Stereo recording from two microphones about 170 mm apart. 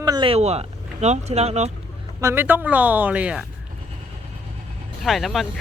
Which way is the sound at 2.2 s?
10° right (ahead or behind).